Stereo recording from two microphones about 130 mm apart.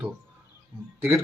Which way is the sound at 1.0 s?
20° right (ahead or behind).